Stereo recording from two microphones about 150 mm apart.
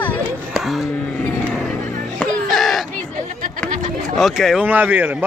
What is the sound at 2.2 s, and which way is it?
Music, centre (ahead or behind).